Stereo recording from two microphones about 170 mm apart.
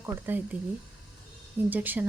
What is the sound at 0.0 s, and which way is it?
Speech, 10° right (ahead or behind).